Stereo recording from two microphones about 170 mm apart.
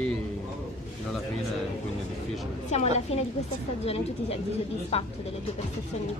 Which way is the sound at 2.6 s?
40° left (ahead or behind).